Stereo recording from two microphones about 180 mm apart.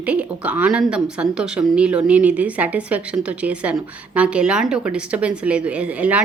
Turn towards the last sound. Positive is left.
turn(degrees=-5)  # may be behind; listen again after turning